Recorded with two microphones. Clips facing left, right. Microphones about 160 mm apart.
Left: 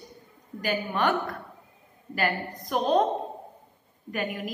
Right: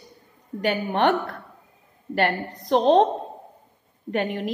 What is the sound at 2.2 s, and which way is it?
Speech, 65° right (ahead or behind).